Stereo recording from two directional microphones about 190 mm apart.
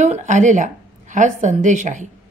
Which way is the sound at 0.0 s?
35° right (ahead or behind).